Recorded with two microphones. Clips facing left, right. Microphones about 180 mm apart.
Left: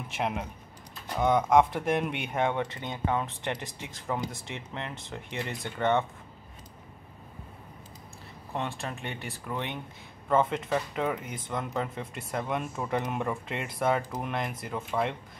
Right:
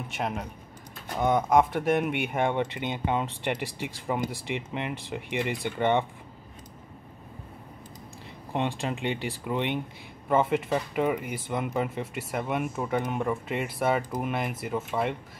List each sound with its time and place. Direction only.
0.1 s speech: centre (ahead or behind)
8.5 s speech: 15° right (ahead or behind)